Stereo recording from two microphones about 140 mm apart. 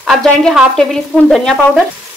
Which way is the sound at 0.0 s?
Centre (ahead or behind).